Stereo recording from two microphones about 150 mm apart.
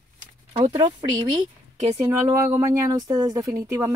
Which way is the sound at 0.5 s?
40° right (ahead or behind).